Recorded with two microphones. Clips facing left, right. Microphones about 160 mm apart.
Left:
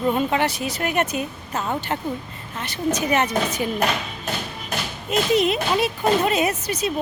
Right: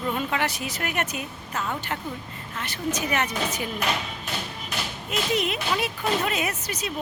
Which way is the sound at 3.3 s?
50° left (ahead or behind).